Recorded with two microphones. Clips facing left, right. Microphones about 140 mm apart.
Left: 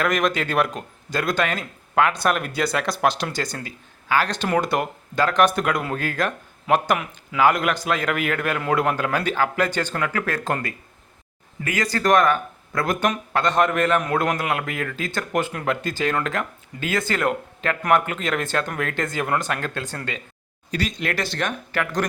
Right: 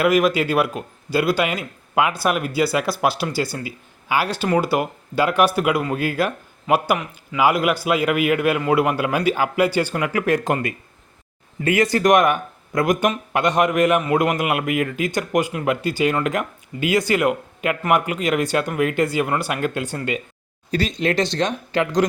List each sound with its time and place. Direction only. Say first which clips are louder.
0.0 s speech: right 5 dB; 5° right (ahead or behind)
20.7 s speech: right 5 dB; 30° right (ahead or behind)